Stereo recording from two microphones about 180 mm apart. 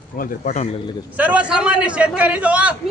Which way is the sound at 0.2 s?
45° left (ahead or behind).